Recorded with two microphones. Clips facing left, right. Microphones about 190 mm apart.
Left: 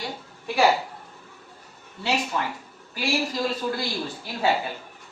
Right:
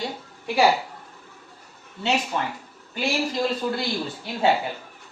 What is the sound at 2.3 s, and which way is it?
Speech, 25° right (ahead or behind).